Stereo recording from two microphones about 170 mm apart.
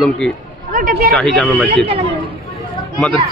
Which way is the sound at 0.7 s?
55° right (ahead or behind).